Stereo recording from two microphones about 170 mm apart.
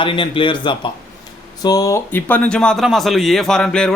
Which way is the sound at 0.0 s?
30° left (ahead or behind).